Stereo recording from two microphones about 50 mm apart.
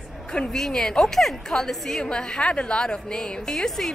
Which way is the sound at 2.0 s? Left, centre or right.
Centre.